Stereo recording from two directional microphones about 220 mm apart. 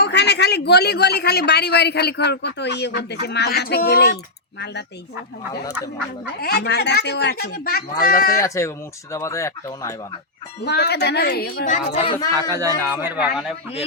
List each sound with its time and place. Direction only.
0.0 s a man's voice: 50° left (ahead or behind)
6.4 s a man's voice: 45° left (ahead or behind)
8.4 s speech: 15° left (ahead or behind)
10.6 s a man's voice: 50° left (ahead or behind)
12.3 s speech: 15° right (ahead or behind)